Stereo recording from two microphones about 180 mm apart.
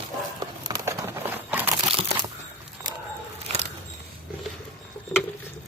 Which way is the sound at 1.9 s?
30° right (ahead or behind).